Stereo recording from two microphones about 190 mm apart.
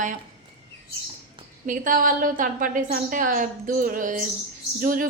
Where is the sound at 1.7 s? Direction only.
45° right (ahead or behind).